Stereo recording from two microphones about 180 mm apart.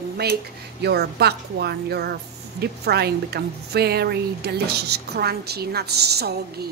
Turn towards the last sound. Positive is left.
turn(degrees=-65)  # may be behind; listen again after turning